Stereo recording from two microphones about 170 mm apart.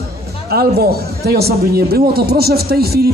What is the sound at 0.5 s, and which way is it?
A man's voice, 65° right (ahead or behind).